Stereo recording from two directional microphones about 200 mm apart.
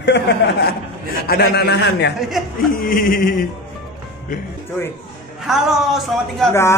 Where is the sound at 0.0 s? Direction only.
55° left (ahead or behind).